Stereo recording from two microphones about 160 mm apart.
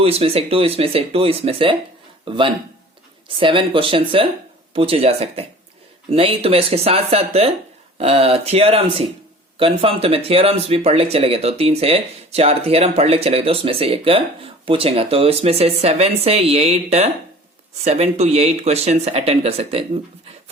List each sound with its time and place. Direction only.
0.0 s speech: 40° right (ahead or behind)